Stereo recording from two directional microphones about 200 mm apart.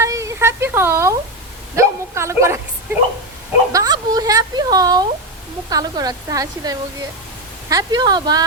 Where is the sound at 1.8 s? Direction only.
15° right (ahead or behind).